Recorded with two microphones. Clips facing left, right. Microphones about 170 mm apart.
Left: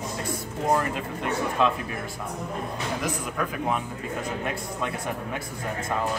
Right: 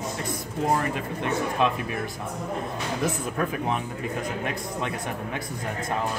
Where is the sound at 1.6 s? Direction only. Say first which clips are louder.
Left 1 dB; 20° right (ahead or behind).